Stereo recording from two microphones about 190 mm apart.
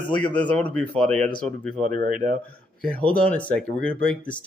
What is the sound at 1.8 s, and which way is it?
Speech, 45° right (ahead or behind).